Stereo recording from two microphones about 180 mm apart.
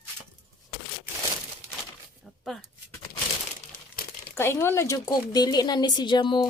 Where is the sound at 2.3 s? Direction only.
Centre (ahead or behind).